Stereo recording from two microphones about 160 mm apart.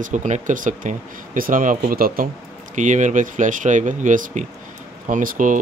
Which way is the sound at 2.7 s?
50° right (ahead or behind).